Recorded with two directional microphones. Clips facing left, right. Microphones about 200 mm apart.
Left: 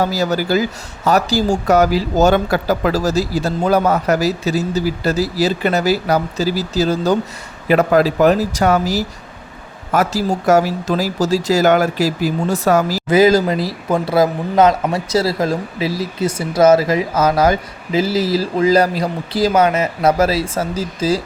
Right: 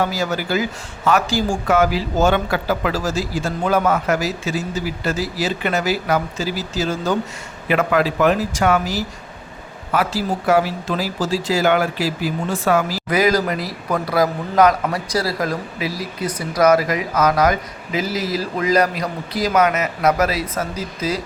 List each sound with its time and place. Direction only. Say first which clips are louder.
0.0 s speech: left 4 dB; 35° left (ahead or behind)
13.1 s speech: left 6 dB; 25° left (ahead or behind)